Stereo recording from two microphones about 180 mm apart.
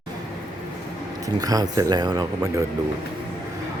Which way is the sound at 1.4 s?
20° right (ahead or behind).